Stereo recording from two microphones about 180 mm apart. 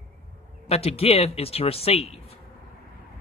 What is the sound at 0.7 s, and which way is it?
Speech, 35° left (ahead or behind).